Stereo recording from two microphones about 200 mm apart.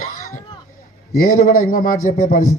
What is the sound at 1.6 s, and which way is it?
Speech, 45° left (ahead or behind).